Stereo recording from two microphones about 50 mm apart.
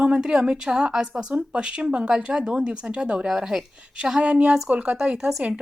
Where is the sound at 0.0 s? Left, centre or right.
Centre.